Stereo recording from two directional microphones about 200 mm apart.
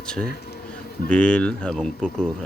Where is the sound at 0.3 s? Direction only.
55° left (ahead or behind).